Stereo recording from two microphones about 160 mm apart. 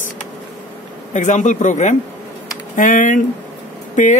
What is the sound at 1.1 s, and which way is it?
Speech, 50° left (ahead or behind).